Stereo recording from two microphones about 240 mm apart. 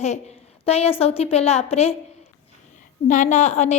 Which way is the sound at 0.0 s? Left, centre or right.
Left.